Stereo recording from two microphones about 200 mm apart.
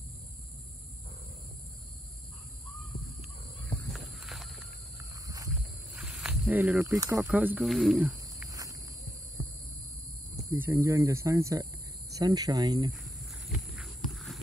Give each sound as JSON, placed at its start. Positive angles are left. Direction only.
{"t": 2.8, "sound": "crow", "side_deg": 0}
{"t": 3.9, "sound": "a sound", "side_deg": 0}
{"t": 5.5, "sound": "snake", "side_deg": -5}
{"t": 7.2, "sound": "speech", "side_deg": -10}
{"t": 8.5, "sound": "walk", "side_deg": -15}
{"t": 10.3, "sound": "speech", "side_deg": -15}
{"t": 13.0, "sound": "walk", "side_deg": 0}